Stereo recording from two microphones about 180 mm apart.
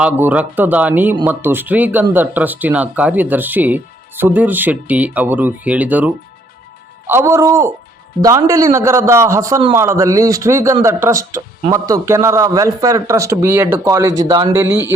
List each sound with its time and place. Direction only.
0.0 s speech: 10° right (ahead or behind)